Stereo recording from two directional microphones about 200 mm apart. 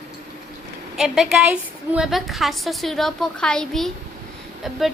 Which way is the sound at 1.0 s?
Centre (ahead or behind).